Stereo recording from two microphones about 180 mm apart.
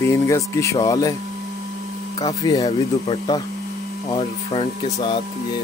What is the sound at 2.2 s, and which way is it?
Speech, 20° left (ahead or behind).